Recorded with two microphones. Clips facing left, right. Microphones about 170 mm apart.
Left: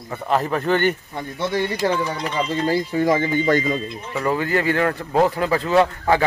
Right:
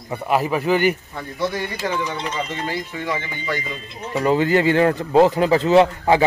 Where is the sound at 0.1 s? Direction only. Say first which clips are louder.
Right 1 dB; 10° right (ahead or behind).